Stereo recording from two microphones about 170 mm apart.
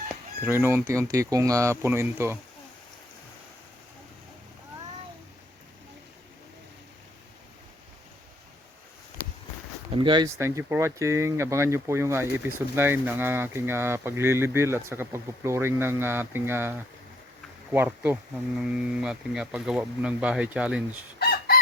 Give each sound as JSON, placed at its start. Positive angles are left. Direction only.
{"t": 0.4, "sound": "speech", "side_deg": -15}
{"t": 9.9, "sound": "speech", "side_deg": -30}
{"t": 10.3, "sound": "speech", "side_deg": -15}
{"t": 21.2, "sound": "chicken", "side_deg": 65}